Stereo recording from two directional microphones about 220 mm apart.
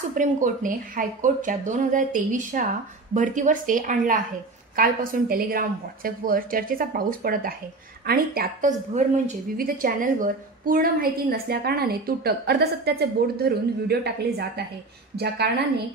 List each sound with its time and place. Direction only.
0.1 s a woman's voice: 35° right (ahead or behind)
15.1 s a woman's voice: 50° right (ahead or behind)